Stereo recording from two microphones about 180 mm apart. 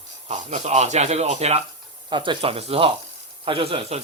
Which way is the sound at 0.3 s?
40° right (ahead or behind).